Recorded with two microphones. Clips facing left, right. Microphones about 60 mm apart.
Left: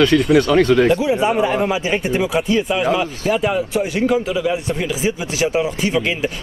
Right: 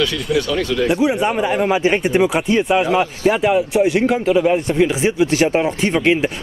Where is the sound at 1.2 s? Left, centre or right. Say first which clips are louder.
Left 1 dB; centre.